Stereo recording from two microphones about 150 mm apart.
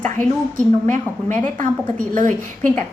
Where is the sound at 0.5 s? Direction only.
55° right (ahead or behind).